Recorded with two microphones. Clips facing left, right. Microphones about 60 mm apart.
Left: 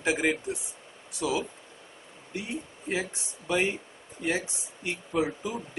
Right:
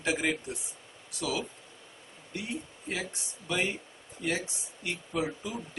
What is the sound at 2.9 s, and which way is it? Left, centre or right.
Speech, left.